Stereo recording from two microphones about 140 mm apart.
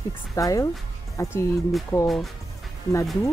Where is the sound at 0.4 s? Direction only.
25° left (ahead or behind).